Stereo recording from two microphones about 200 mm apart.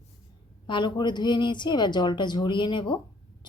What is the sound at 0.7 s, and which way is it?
Speech, 25° left (ahead or behind).